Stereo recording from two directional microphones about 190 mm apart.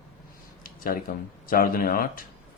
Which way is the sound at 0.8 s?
50° left (ahead or behind).